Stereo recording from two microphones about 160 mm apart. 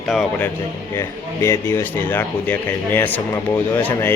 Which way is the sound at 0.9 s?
15° left (ahead or behind).